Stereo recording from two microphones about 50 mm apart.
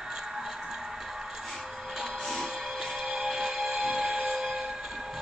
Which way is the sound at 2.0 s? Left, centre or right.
Centre.